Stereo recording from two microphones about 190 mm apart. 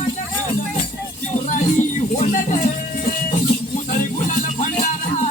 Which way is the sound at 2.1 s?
40° left (ahead or behind).